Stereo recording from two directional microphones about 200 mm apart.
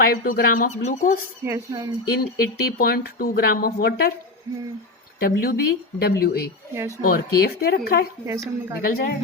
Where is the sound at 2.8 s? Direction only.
50° left (ahead or behind).